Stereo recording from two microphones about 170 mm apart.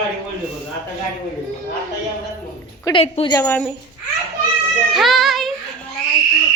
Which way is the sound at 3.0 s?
40° left (ahead or behind).